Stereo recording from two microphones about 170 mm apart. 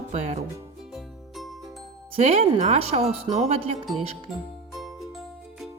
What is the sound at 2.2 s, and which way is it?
Speech, 40° right (ahead or behind).